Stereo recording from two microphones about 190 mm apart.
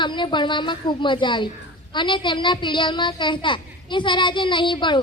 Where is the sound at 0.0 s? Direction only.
25° left (ahead or behind).